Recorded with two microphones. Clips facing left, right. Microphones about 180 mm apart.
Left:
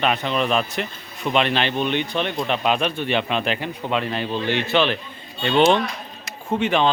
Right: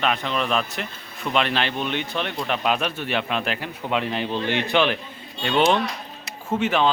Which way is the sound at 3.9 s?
15° right (ahead or behind).